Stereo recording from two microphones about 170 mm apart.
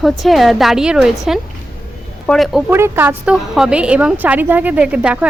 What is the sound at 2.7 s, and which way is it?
A woman's voice, 15° right (ahead or behind).